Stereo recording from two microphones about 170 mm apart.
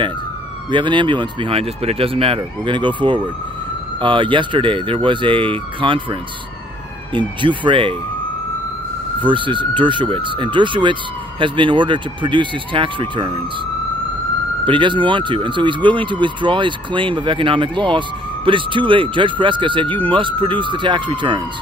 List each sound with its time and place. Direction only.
0.7 s speech: 30° right (ahead or behind)
7.2 s speech: 30° right (ahead or behind)
9.2 s speech: 30° right (ahead or behind)
14.7 s speech: 30° right (ahead or behind)